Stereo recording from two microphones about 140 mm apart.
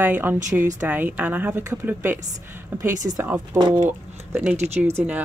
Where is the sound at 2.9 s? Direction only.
60° right (ahead or behind).